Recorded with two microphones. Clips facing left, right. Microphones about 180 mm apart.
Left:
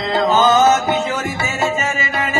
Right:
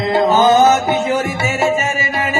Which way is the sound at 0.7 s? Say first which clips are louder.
Right 3 dB; 20° right (ahead or behind).